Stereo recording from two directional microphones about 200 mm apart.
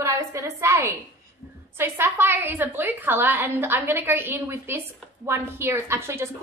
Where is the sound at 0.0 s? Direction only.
15° right (ahead or behind).